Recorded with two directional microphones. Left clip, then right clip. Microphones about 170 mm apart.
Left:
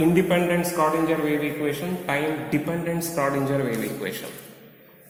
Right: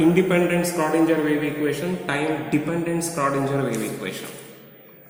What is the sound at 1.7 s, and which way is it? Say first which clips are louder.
A man's voice: right 1 dB; 40° left (ahead or behind).